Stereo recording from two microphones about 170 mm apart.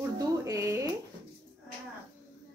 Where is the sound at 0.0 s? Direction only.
15° right (ahead or behind).